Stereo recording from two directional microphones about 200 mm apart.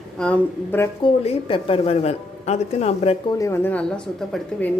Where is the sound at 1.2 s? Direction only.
25° left (ahead or behind).